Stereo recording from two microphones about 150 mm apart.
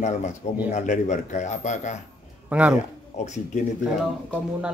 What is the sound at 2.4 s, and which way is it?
Speech, 10° right (ahead or behind).